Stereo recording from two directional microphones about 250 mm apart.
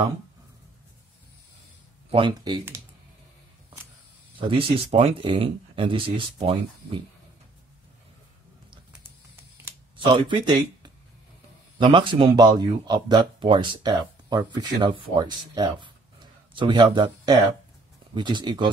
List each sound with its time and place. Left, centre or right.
2.0 s speech: right
4.4 s speech: right
9.7 s a sound: centre
11.8 s speech: centre